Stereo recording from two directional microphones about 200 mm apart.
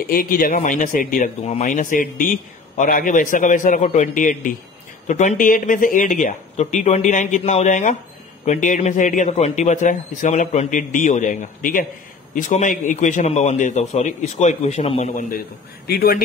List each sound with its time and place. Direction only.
0.1 s a man's voice: 45° left (ahead or behind)
15.9 s speech: 50° left (ahead or behind)